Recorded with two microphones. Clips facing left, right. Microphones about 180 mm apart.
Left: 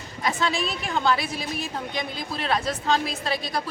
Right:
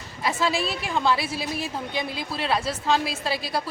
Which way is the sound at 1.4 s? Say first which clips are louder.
Right 2 dB; 30° right (ahead or behind).